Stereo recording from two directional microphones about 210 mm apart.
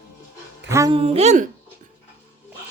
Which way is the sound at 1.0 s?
30° right (ahead or behind).